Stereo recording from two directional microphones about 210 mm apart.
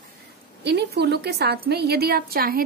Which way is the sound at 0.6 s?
55° right (ahead or behind).